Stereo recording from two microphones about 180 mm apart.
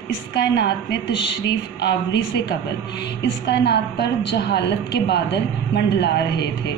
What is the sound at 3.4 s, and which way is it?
A woman's voice, 70° left (ahead or behind).